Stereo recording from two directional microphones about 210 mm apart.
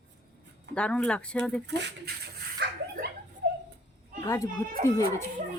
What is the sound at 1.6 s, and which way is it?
Dog, 55° right (ahead or behind).